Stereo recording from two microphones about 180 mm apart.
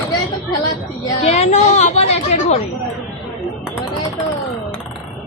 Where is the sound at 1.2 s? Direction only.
35° left (ahead or behind).